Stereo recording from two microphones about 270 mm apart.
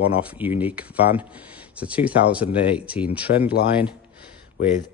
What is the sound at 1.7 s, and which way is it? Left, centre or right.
Speech, centre.